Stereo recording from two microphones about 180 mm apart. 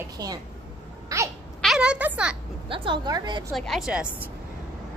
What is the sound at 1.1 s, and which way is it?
Speech, 20° right (ahead or behind).